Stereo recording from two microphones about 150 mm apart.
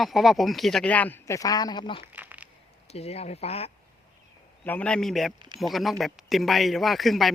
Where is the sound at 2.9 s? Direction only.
45° left (ahead or behind).